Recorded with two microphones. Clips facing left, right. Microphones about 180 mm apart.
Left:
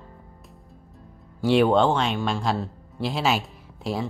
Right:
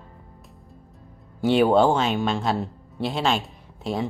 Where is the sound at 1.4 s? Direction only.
Centre (ahead or behind).